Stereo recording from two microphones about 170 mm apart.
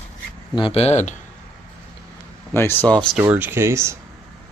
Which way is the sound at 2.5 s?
15° left (ahead or behind).